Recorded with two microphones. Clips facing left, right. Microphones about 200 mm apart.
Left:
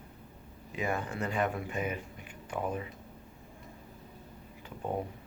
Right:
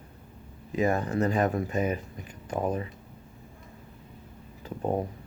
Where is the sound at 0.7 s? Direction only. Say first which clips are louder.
Right 8 dB; 40° right (ahead or behind).